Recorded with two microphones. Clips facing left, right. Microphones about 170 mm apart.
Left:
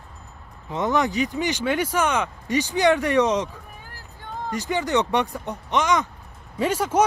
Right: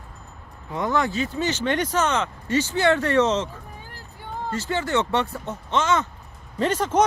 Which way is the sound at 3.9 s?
15° right (ahead or behind).